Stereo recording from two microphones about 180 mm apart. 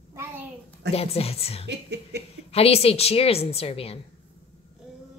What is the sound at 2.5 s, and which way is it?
A woman's voice, 35° left (ahead or behind).